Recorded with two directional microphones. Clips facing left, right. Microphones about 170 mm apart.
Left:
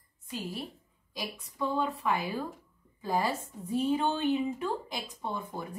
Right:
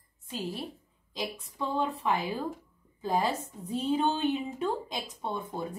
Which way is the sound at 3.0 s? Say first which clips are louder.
Right 1 dB; 20° right (ahead or behind).